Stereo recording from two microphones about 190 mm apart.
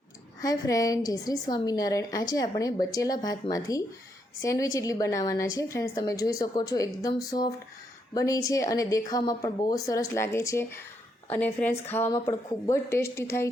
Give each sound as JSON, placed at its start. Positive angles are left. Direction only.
{"t": 0.4, "sound": "a woman's voice", "side_deg": 20}